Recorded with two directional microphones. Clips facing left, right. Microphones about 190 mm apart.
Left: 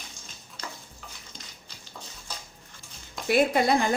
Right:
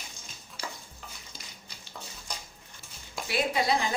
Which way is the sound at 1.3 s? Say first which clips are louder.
Left 2 dB; 5° right (ahead or behind).